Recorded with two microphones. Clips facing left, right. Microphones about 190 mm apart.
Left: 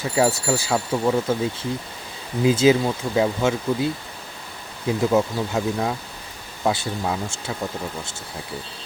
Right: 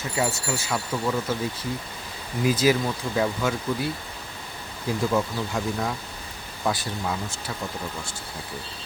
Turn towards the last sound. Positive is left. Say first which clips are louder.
# left 4 dB
turn(degrees=25)  # may be behind; listen again after turning